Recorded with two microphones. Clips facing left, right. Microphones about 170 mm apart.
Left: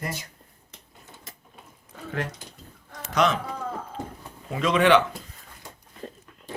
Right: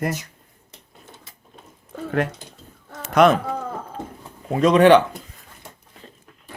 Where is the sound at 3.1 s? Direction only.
55° right (ahead or behind).